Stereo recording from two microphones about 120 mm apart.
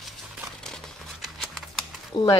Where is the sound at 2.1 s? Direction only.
45° left (ahead or behind).